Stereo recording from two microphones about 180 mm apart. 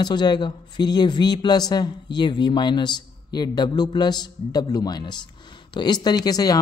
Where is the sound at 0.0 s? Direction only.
25° left (ahead or behind).